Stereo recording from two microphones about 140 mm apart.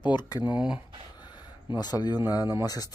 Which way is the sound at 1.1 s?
30° left (ahead or behind).